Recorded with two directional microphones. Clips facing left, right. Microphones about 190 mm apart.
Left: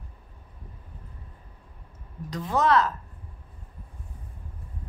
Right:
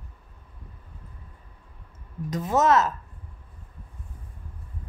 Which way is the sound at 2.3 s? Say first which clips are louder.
Right 2 dB; 20° right (ahead or behind).